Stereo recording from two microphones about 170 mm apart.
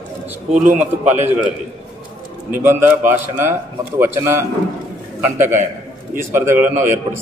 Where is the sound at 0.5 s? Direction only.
50° right (ahead or behind).